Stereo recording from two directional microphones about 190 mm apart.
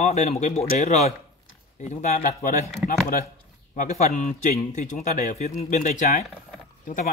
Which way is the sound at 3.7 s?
40° left (ahead or behind).